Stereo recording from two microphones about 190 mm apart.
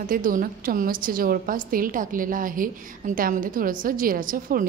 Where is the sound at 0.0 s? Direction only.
45° right (ahead or behind).